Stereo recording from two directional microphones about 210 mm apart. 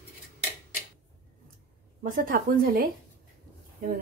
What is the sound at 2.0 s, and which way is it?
Speech, 40° right (ahead or behind).